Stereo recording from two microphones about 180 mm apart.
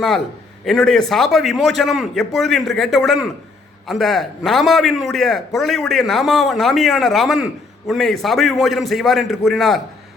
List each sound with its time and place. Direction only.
0.6 s a man's voice: centre (ahead or behind)